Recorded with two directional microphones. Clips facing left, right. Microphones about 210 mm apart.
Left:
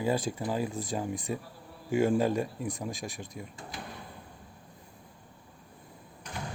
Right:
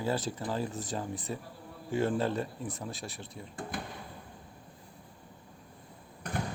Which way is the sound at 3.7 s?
55° right (ahead or behind).